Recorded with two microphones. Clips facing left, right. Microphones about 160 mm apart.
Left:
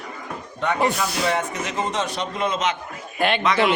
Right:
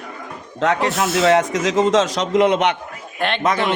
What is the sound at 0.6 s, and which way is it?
Speech, 90° right.